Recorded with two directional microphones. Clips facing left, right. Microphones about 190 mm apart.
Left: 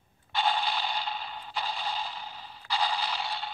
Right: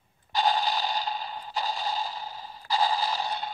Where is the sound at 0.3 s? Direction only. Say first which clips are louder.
Right 3 dB; 40° right (ahead or behind).